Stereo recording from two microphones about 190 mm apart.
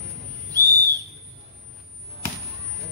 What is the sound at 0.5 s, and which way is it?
Owl, 15° right (ahead or behind).